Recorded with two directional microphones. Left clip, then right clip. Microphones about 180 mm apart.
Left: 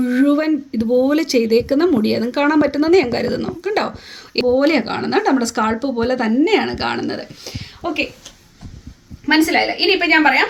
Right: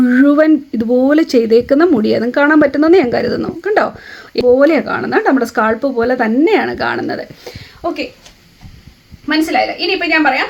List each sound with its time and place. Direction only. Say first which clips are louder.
0.0 s speech: right 7 dB; 65° right (ahead or behind)
9.2 s a woman's voice: right 1 dB; 5° right (ahead or behind)